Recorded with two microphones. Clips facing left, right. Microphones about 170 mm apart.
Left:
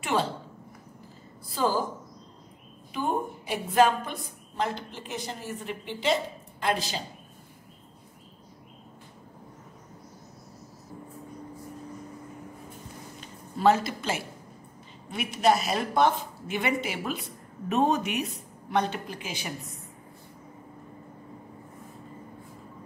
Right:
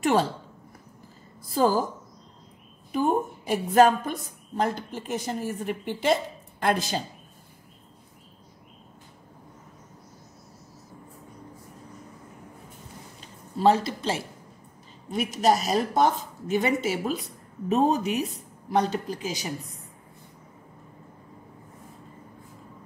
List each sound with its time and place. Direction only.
0.0 s a woman's voice: 45° right (ahead or behind)
1.6 s a woman's voice: 45° right (ahead or behind)
3.4 s a woman's voice: 45° right (ahead or behind)
13.6 s a woman's voice: 30° right (ahead or behind)